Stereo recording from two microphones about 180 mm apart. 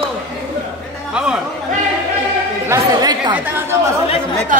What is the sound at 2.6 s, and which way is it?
Speech, 20° right (ahead or behind).